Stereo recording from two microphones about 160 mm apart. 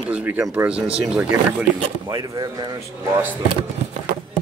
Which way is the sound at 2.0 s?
20° right (ahead or behind).